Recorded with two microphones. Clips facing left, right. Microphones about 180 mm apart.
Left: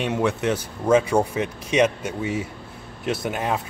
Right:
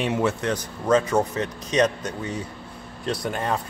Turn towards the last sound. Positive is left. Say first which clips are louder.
# left 1 dB
turn(degrees=5)  # may be behind; listen again after turning